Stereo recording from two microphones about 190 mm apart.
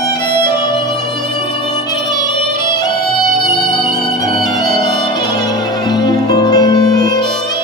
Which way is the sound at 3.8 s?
20° left (ahead or behind).